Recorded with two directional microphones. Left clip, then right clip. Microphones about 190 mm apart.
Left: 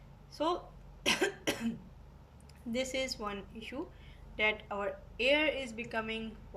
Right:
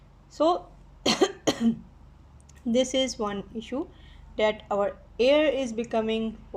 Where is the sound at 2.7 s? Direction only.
30° right (ahead or behind).